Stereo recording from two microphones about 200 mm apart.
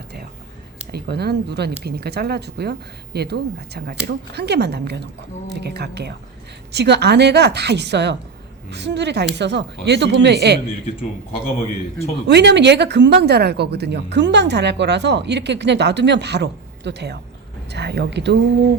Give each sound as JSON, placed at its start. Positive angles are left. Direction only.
{"t": 0.9, "sound": "a woman's voice", "side_deg": -55}
{"t": 11.3, "sound": "a man's voice", "side_deg": 30}
{"t": 12.3, "sound": "speech", "side_deg": -60}